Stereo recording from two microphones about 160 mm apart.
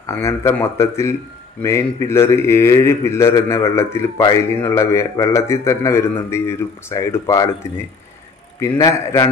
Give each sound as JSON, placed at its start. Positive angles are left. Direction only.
{"t": 0.0, "sound": "a man's voice", "side_deg": 15}